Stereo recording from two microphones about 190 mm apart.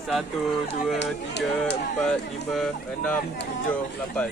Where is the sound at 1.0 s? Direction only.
65° left (ahead or behind).